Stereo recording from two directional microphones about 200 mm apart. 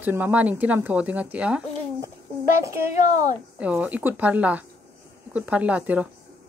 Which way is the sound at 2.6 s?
15° right (ahead or behind).